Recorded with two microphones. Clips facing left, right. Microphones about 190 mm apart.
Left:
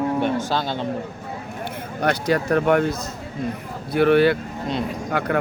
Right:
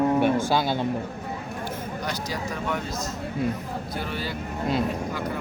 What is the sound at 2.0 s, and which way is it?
Speech, 60° left (ahead or behind).